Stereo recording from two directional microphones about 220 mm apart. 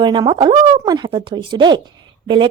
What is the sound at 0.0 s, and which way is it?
A woman's voice, 20° right (ahead or behind).